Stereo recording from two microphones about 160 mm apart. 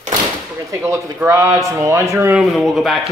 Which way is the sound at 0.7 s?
20° right (ahead or behind).